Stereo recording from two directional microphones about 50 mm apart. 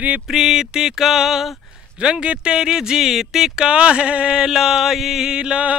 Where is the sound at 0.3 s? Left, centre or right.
Centre.